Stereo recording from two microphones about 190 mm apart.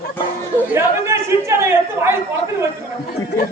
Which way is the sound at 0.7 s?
15° right (ahead or behind).